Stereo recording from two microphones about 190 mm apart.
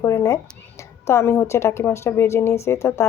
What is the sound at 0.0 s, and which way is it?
A woman's voice, 15° left (ahead or behind).